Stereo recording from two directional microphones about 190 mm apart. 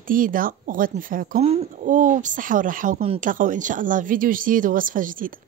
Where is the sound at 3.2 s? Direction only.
45° right (ahead or behind).